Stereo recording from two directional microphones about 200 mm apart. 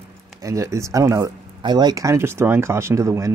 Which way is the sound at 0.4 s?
15° right (ahead or behind).